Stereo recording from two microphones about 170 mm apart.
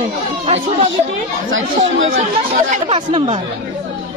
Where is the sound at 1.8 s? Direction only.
50° right (ahead or behind).